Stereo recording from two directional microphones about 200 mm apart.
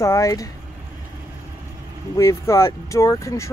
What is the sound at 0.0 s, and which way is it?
Speech, 15° left (ahead or behind).